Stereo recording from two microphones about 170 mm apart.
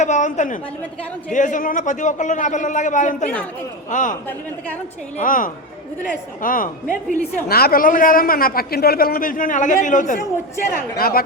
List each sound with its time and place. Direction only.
0.0 s a man's voice: 45° left (ahead or behind)
7.4 s a man's voice: 65° left (ahead or behind); by 10.2 s 50° left (ahead or behind)
10.9 s a man's voice: 60° left (ahead or behind)